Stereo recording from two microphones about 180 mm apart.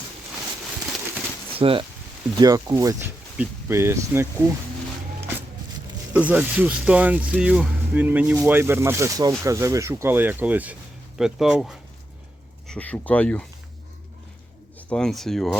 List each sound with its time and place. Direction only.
1.5 s speech: 30° right (ahead or behind)
2.4 s speech: 20° right (ahead or behind)
6.1 s speech: 5° right (ahead or behind); by 13.4 s 10° left (ahead or behind)
14.8 s speech: 5° left (ahead or behind)